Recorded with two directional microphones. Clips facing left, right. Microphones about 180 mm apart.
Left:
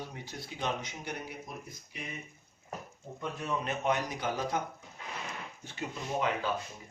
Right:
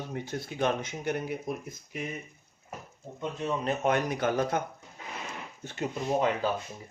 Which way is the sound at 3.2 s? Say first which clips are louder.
Right 5 dB; 25° right (ahead or behind).